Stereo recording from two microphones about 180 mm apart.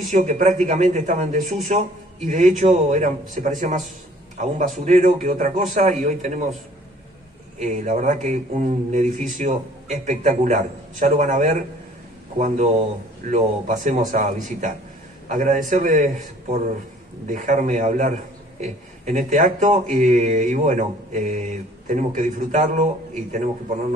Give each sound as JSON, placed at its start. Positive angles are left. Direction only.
{"t": 0.1, "sound": "speech", "side_deg": -45}
{"t": 7.5, "sound": "speech", "side_deg": -45}